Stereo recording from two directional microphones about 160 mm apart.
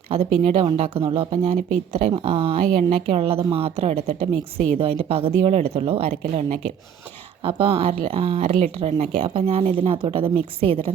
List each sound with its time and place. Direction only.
0.8 s speech: 35° right (ahead or behind)